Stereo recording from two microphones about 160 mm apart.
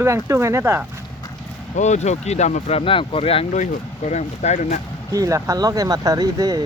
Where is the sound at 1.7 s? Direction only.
45° left (ahead or behind).